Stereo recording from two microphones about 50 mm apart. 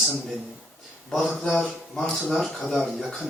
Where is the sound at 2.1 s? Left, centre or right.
Centre.